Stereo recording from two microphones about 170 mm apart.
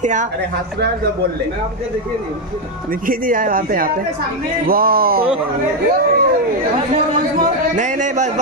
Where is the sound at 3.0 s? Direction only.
55° right (ahead or behind).